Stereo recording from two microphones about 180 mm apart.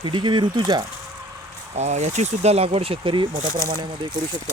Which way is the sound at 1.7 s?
40° right (ahead or behind).